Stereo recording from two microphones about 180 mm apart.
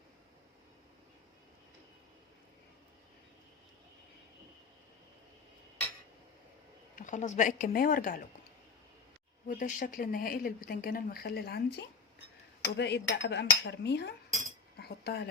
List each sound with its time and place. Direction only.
6.9 s speech: 45° left (ahead or behind)
9.5 s speech: 45° left (ahead or behind); by 15.3 s 65° left (ahead or behind)